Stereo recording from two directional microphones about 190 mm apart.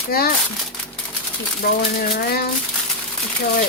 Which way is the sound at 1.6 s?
50° left (ahead or behind).